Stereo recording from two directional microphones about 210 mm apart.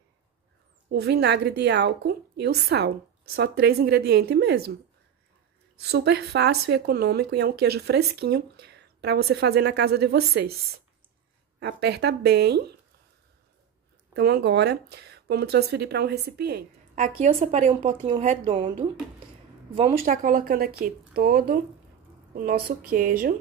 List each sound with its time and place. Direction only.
0.8 s speech: 50° right (ahead or behind)
5.8 s speech: 50° right (ahead or behind)
11.6 s speech: 50° right (ahead or behind)
14.1 s speech: 50° right (ahead or behind)
16.9 s a woman's voice: 35° right (ahead or behind)
20.1 s a woman's voice: 40° right (ahead or behind)